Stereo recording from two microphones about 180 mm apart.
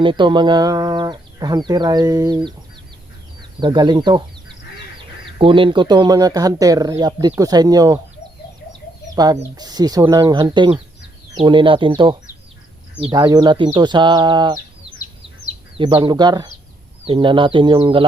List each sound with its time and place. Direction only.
0.0 s speech: 25° right (ahead or behind)
3.6 s speech: 25° right (ahead or behind)
5.2 s speech: 30° right (ahead or behind)
9.0 s speech: 20° right (ahead or behind)
14.8 s bird: 30° right (ahead or behind)
15.8 s speech: 25° right (ahead or behind)